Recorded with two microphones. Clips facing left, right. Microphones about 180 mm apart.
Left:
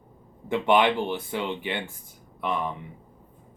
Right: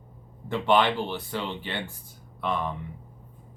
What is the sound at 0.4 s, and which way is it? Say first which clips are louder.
Speech: left 2 dB; 20° left (ahead or behind).